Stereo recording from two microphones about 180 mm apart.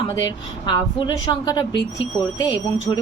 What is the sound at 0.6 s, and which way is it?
A woman's voice, 25° left (ahead or behind).